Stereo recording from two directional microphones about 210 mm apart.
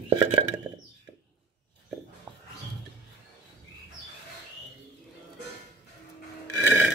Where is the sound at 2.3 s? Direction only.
20° right (ahead or behind).